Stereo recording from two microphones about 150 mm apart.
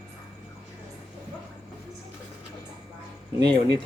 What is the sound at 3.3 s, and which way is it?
Speech, 30° right (ahead or behind).